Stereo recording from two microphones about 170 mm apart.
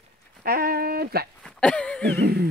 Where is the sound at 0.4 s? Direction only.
60° right (ahead or behind).